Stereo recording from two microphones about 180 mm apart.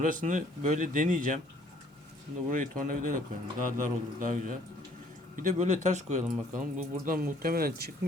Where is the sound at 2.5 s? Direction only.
50° right (ahead or behind).